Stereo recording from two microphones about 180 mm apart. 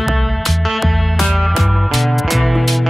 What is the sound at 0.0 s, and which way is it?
Music, centre (ahead or behind).